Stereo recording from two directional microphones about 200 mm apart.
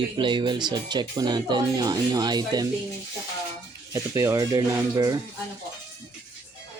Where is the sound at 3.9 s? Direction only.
15° right (ahead or behind).